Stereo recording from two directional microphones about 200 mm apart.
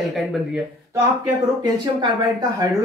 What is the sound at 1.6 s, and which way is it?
Speech, 20° right (ahead or behind).